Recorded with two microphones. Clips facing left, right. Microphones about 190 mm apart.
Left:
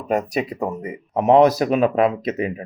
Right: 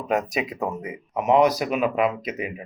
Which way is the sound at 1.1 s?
35° left (ahead or behind).